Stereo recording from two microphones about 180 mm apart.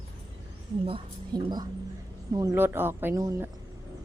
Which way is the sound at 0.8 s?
25° right (ahead or behind).